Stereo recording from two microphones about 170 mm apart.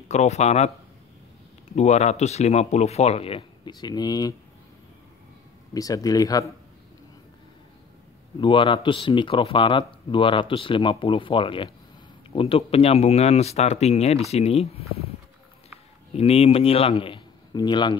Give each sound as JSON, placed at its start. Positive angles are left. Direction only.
{"t": 0.1, "sound": "speech", "side_deg": 40}
{"t": 1.7, "sound": "speech", "side_deg": 40}
{"t": 5.7, "sound": "speech", "side_deg": 20}
{"t": 8.4, "sound": "speech", "side_deg": 30}
{"t": 16.2, "sound": "speech", "side_deg": 35}